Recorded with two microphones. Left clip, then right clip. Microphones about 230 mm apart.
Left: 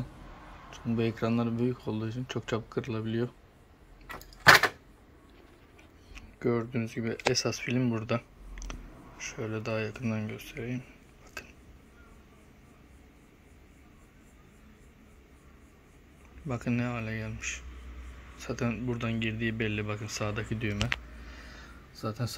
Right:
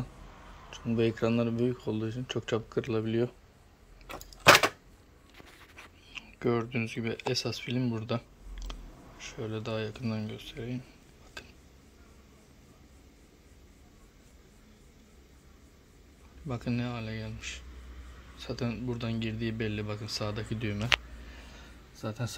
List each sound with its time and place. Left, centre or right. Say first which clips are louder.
0.7 s speech: right 2 dB; centre
4.2 s door: left 1 dB; right
6.1 s speech: even; centre
16.4 s speech: left 2 dB; centre
18.6 s speech: left 3 dB; centre
20.8 s a sound: right 5 dB; centre